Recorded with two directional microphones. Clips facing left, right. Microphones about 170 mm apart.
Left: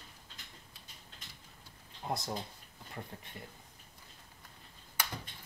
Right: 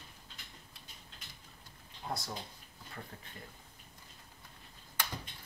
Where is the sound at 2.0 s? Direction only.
20° left (ahead or behind).